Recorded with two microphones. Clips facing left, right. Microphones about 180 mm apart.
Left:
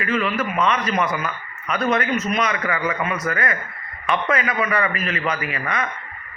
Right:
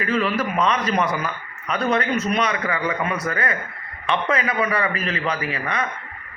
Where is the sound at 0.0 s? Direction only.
35° right (ahead or behind).